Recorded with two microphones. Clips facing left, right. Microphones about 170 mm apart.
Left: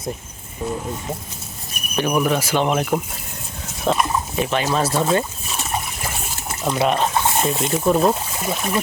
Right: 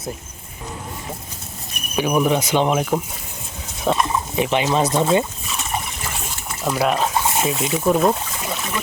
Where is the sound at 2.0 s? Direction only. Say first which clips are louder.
Right 1 dB; 10° right (ahead or behind).